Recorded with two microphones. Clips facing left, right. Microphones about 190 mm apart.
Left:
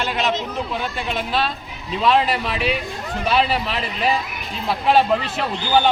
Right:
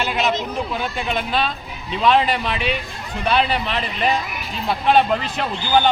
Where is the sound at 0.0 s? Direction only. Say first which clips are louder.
Right 1 dB; 5° right (ahead or behind).